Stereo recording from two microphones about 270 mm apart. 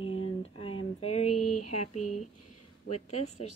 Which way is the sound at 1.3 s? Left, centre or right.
Left.